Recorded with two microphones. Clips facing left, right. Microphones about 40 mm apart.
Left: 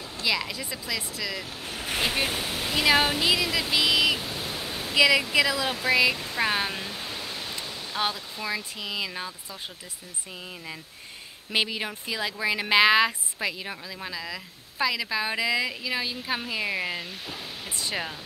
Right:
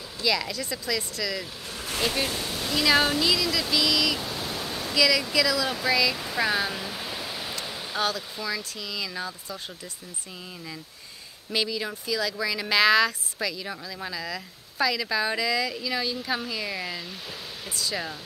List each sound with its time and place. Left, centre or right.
0.2 s speech: centre
1.7 s speech: left
4.2 s pink noise: centre
4.9 s speech: left
6.1 s speech: centre
6.4 s speech: left
6.9 s pink noise: centre
8.0 s speech: left
11.5 s speech: left
13.9 s speech: centre; by 18.1 s left